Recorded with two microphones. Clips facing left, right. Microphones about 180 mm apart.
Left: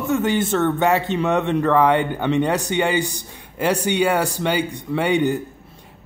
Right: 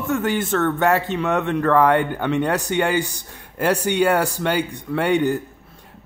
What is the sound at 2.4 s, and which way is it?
Speech, 15° left (ahead or behind).